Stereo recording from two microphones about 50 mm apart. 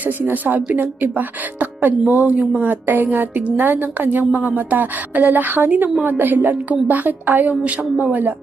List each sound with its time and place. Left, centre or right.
0.3 s a woman's voice: right